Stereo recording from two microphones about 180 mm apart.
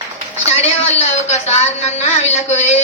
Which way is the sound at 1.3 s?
40° left (ahead or behind).